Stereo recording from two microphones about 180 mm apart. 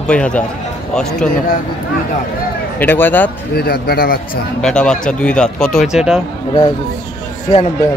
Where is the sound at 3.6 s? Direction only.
60° left (ahead or behind).